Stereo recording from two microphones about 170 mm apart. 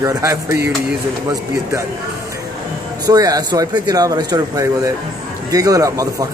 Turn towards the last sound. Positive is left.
turn(degrees=-20)  # may be behind; listen again after turning